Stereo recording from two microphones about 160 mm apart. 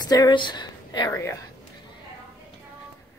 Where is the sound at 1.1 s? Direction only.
15° left (ahead or behind).